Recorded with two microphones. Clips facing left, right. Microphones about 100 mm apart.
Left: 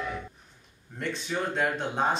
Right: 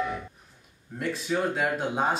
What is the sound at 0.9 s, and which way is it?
Speech, 5° right (ahead or behind).